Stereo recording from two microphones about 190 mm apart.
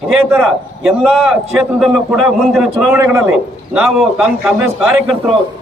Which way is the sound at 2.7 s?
10° right (ahead or behind).